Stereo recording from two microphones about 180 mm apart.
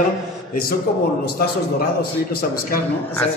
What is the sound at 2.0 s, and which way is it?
Speech, 55° left (ahead or behind).